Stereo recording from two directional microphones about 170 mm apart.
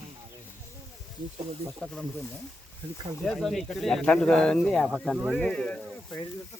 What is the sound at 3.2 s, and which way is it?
Speech, centre (ahead or behind).